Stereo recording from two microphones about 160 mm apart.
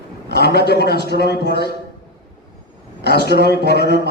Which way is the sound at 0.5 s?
90° left.